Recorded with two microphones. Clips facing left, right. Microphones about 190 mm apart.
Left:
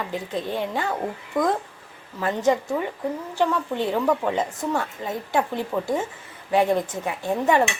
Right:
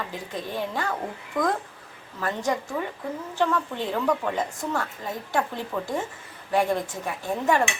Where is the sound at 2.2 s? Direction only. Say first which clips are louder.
Left 5 dB; 20° left (ahead or behind).